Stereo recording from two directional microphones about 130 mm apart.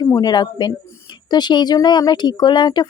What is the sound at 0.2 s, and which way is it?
Speech, 35° left (ahead or behind).